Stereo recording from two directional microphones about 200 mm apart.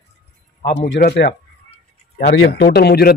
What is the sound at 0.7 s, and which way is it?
A man's voice, 65° left (ahead or behind).